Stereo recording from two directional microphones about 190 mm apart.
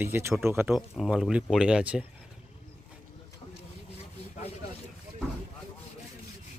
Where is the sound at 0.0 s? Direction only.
15° right (ahead or behind).